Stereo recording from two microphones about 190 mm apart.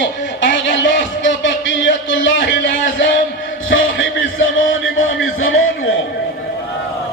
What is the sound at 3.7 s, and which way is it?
Music, 90° left.